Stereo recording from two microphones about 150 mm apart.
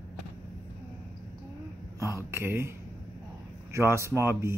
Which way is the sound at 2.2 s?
15° right (ahead or behind).